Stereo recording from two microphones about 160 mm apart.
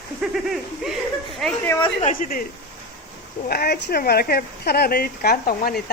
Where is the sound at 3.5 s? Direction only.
70° left (ahead or behind).